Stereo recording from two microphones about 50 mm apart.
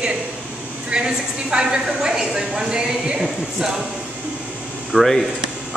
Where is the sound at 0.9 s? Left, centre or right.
Centre.